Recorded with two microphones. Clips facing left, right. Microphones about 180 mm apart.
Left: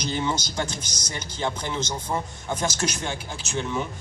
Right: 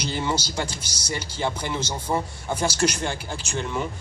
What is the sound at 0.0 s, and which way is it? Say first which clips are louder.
A man's voice: even; 10° right (ahead or behind).